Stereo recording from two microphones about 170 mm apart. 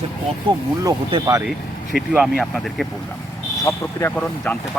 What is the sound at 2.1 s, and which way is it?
Speech, 5° right (ahead or behind).